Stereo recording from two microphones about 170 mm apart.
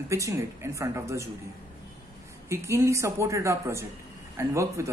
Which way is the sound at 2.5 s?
15° right (ahead or behind).